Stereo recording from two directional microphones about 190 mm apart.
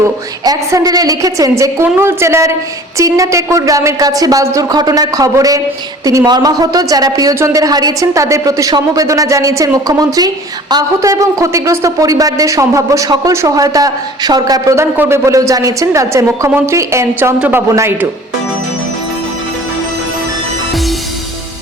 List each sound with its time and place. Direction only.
0.0 s speech: 20° right (ahead or behind)